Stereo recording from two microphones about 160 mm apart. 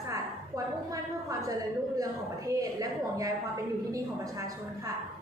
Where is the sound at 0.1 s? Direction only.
20° right (ahead or behind).